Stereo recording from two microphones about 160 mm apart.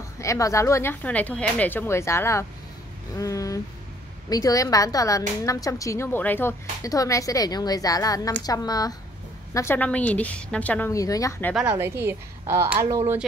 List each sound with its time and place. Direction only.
0.2 s a woman's voice: 20° left (ahead or behind)
10.9 s a woman's voice: 20° left (ahead or behind)
11.5 s a woman's voice: 10° right (ahead or behind)